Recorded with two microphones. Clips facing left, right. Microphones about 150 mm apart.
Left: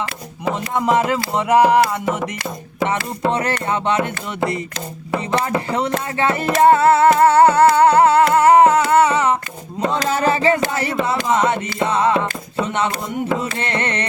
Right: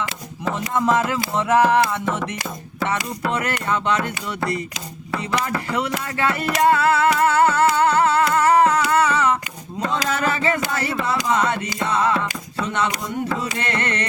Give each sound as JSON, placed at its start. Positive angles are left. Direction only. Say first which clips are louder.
{"t": 0.7, "sound": "music", "louder": "left 2 dB", "side_deg": 20}
{"t": 3.2, "sound": "carnatic music", "louder": "left 4 dB", "side_deg": 25}
{"t": 5.1, "sound": "a sound", "louder": "left 4 dB", "side_deg": 25}
{"t": 11.3, "sound": "music", "louder": "left 3 dB", "side_deg": 25}
{"t": 13.6, "sound": "carnatic music", "louder": "left 2 dB", "side_deg": 25}